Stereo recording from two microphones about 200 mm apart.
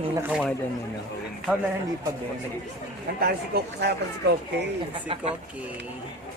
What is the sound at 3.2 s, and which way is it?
Speech, 50° right (ahead or behind).